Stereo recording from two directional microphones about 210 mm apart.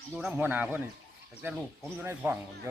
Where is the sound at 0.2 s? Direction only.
5° right (ahead or behind).